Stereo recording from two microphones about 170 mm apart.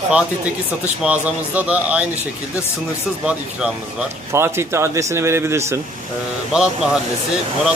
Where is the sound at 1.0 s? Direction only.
10° right (ahead or behind).